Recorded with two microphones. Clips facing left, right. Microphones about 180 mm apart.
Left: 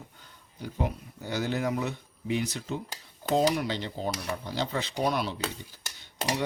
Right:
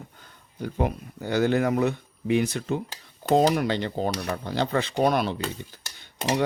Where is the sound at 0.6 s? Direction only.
60° right (ahead or behind).